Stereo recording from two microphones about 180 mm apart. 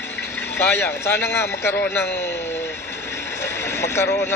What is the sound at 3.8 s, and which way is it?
Speech, 15° left (ahead or behind).